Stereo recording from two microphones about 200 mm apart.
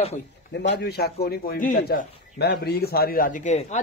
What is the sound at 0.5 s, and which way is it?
A man's voice, 60° left (ahead or behind).